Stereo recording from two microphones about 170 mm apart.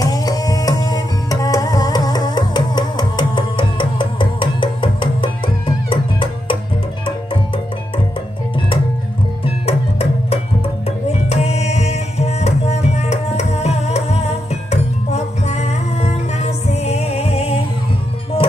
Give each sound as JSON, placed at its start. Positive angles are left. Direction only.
{"t": 0.0, "sound": "music", "side_deg": 20}
{"t": 9.4, "sound": "music", "side_deg": 35}